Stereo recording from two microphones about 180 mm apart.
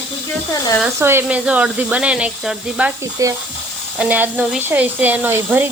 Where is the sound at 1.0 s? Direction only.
15° right (ahead or behind).